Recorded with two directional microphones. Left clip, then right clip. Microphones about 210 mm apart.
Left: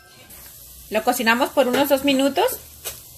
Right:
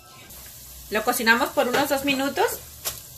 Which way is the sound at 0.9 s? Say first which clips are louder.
Left 1 dB; 45° left (ahead or behind).